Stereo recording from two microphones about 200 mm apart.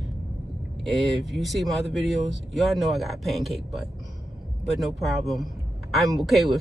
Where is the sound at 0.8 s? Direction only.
Centre (ahead or behind).